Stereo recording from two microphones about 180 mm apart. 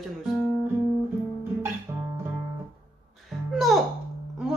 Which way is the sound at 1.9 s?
20° right (ahead or behind).